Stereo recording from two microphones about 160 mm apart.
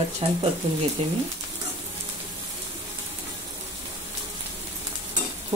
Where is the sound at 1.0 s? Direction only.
40° right (ahead or behind).